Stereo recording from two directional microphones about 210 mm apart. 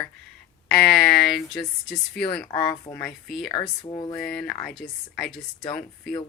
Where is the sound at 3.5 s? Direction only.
15° left (ahead or behind).